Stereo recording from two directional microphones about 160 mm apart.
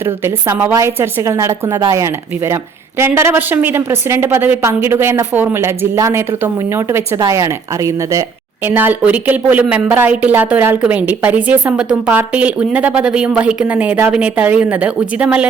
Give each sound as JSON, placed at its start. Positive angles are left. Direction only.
{"t": 0.4, "sound": "speech", "side_deg": -15}
{"t": 8.6, "sound": "speech", "side_deg": -10}